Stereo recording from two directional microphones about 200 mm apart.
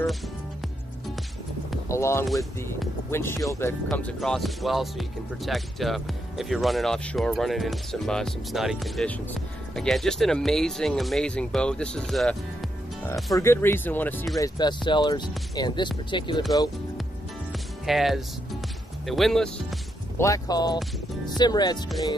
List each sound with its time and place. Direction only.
1.9 s speech: 15° left (ahead or behind)
2.2 s speech: centre (ahead or behind)
3.1 s speech: 15° left (ahead or behind)
3.9 s speech: centre (ahead or behind)
13.4 s speech: 10° left (ahead or behind)
17.5 s music: centre (ahead or behind)
19.0 s speech: centre (ahead or behind)
20.2 s speech: 15° left (ahead or behind)